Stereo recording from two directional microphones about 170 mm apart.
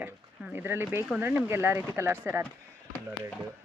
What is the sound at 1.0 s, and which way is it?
Speech, 10° right (ahead or behind).